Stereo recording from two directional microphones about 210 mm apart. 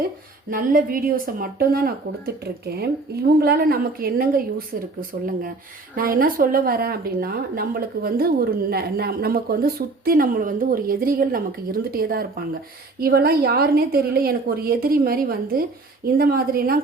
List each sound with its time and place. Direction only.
0.5 s a woman's voice: 40° right (ahead or behind)